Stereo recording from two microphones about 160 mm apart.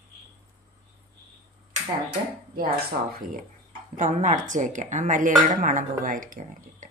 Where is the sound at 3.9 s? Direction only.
50° right (ahead or behind).